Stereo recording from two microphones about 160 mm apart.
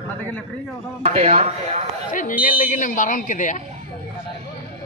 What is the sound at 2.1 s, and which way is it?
Speech, 55° left (ahead or behind).